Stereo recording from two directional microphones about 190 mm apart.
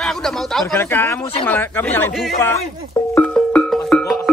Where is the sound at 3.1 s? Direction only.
5° left (ahead or behind).